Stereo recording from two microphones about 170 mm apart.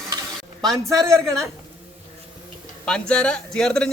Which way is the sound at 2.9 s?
5° left (ahead or behind).